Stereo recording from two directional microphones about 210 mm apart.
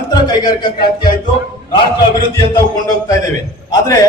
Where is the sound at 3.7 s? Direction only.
15° left (ahead or behind).